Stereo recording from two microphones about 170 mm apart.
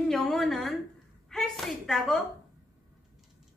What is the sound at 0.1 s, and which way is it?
Speech, centre (ahead or behind).